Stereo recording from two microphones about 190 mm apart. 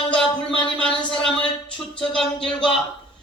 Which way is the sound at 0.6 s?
5° left (ahead or behind).